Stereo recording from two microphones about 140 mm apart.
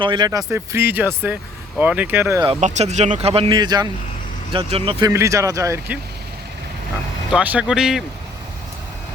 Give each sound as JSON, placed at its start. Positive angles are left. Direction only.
{"t": 0.0, "sound": "speech", "side_deg": -30}
{"t": 2.6, "sound": "speech", "side_deg": -55}
{"t": 3.5, "sound": "speech", "side_deg": -30}
{"t": 5.0, "sound": "speech", "side_deg": -20}
{"t": 7.3, "sound": "speech", "side_deg": -10}